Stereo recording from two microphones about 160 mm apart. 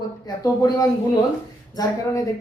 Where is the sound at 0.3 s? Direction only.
25° left (ahead or behind).